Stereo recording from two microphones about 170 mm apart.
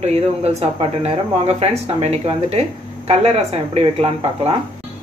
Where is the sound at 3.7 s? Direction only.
40° right (ahead or behind).